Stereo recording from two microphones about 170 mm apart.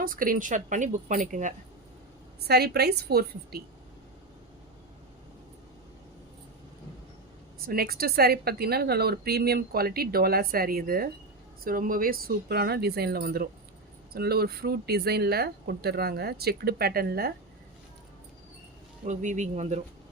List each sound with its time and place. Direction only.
0.0 s speech: 55° right (ahead or behind)
2.4 s speech: 70° right (ahead or behind)
7.6 s a woman's voice: 60° right (ahead or behind)
19.0 s speech: 45° right (ahead or behind)